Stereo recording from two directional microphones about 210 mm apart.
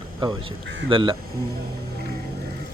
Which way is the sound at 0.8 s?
25° right (ahead or behind).